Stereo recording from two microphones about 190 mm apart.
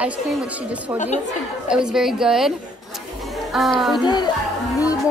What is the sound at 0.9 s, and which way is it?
Speech, 35° left (ahead or behind).